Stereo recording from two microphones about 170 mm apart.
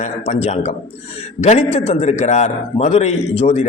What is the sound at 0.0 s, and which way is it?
A man's voice, 40° left (ahead or behind).